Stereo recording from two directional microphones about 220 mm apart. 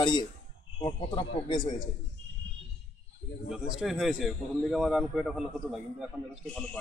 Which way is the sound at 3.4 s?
Centre (ahead or behind).